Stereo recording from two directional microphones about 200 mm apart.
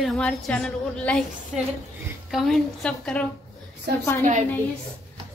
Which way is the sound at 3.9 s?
50° right (ahead or behind).